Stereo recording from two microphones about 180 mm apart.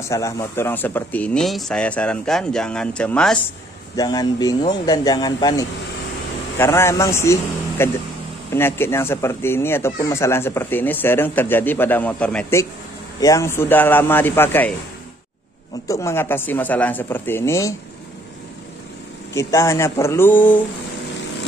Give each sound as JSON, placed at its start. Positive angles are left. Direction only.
{"t": 0.1, "sound": "speech", "side_deg": 15}
{"t": 3.9, "sound": "speech", "side_deg": 20}
{"t": 15.9, "sound": "speech", "side_deg": 15}
{"t": 19.3, "sound": "speech", "side_deg": 15}